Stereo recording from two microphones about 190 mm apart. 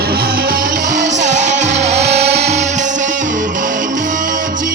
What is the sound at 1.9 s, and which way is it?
Music, 35° right (ahead or behind).